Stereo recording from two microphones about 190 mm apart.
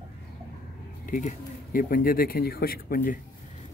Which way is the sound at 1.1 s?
45° left (ahead or behind).